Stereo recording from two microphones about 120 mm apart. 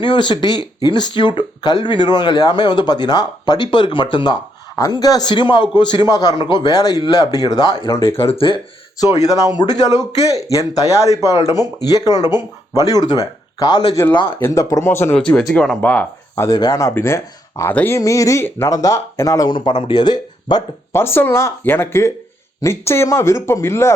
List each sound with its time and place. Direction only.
0.0 s speech: 40° left (ahead or behind); by 8.3 s 20° left (ahead or behind)
8.3 s speech: 50° left (ahead or behind)
9.0 s speech: 30° left (ahead or behind)
14.3 s speech: 20° left (ahead or behind)
15.1 s speech: 10° left (ahead or behind)
15.8 s speech: 15° left (ahead or behind)
16.3 s speech: 25° left (ahead or behind)
20.9 s speech: 20° left (ahead or behind)